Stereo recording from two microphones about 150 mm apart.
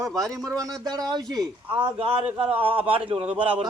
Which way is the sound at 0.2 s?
20° right (ahead or behind).